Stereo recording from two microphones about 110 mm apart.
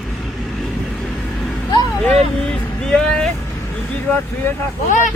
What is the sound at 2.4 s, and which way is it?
Speech, 5° left (ahead or behind).